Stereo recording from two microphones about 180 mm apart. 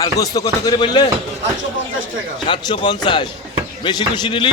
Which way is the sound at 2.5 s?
25° left (ahead or behind).